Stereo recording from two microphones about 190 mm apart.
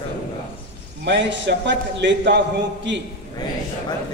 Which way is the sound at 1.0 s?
70° right (ahead or behind).